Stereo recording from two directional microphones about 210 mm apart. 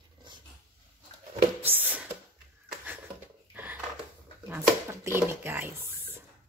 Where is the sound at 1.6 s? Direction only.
10° right (ahead or behind).